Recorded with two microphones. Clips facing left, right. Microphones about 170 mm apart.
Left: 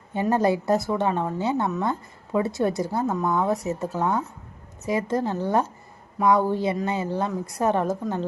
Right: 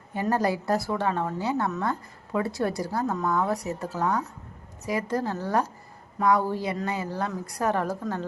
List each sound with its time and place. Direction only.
0.1 s a woman's voice: 25° left (ahead or behind)